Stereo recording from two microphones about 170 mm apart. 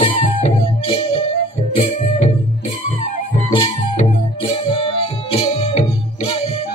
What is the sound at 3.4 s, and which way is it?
Music, 35° left (ahead or behind).